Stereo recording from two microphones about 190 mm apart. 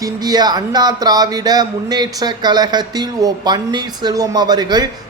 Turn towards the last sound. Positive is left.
turn(degrees=-20)  # may be behind; listen again after turning